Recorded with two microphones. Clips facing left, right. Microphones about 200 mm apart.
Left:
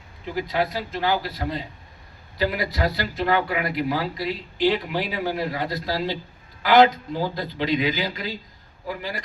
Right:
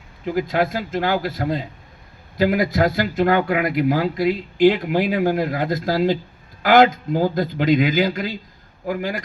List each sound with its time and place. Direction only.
0.3 s speech: 50° right (ahead or behind)